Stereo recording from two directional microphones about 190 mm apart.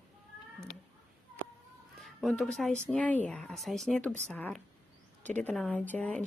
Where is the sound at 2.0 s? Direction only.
Centre (ahead or behind).